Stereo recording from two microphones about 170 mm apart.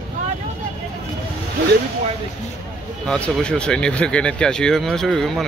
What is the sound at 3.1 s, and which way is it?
Speech, 5° left (ahead or behind).